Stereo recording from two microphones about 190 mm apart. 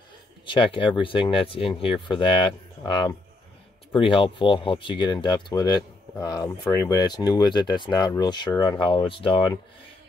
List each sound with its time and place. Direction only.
0.5 s speech: 25° left (ahead or behind)